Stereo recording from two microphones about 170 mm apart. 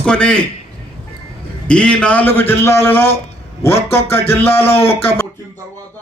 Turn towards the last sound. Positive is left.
turn(degrees=35)  # may be behind; listen again after turning